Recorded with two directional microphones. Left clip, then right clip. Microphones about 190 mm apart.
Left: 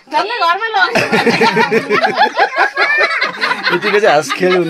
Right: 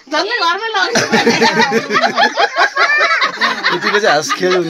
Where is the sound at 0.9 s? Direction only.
15° left (ahead or behind).